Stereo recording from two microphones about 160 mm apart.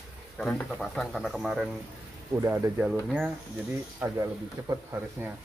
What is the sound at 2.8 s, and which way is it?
Speech, 5° right (ahead or behind).